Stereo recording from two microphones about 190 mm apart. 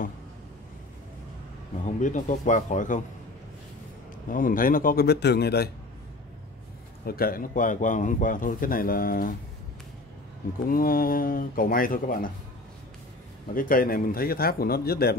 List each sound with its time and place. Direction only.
1.9 s speech: 40° left (ahead or behind)
4.3 s a man's voice: 45° left (ahead or behind)
7.1 s a man's voice: 50° left (ahead or behind)
10.7 s a man's voice: 50° left (ahead or behind)
13.6 s a man's voice: 45° left (ahead or behind)